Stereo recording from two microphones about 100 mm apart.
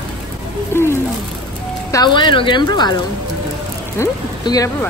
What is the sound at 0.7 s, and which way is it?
Speech, 25° left (ahead or behind).